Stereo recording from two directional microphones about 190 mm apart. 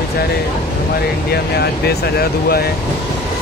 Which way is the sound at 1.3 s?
55° left (ahead or behind).